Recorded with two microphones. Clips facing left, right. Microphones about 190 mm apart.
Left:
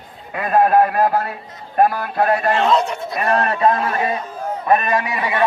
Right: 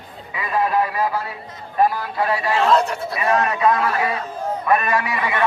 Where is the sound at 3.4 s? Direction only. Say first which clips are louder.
Left 2 dB; 30° left (ahead or behind).